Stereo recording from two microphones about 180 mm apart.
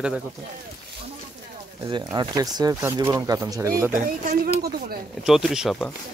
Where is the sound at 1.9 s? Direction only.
20° right (ahead or behind).